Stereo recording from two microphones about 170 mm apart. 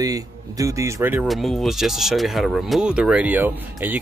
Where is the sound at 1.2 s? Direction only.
Centre (ahead or behind).